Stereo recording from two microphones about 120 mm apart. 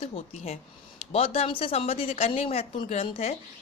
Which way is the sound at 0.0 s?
60° left (ahead or behind).